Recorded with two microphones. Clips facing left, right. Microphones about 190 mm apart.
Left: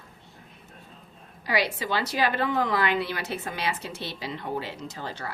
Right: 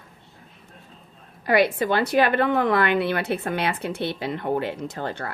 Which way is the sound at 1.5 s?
55° right (ahead or behind).